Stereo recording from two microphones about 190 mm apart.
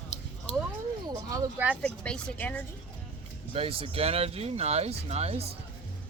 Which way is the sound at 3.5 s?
30° right (ahead or behind).